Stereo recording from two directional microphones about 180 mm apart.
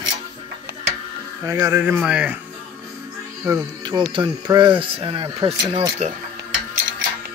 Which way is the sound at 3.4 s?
20° right (ahead or behind).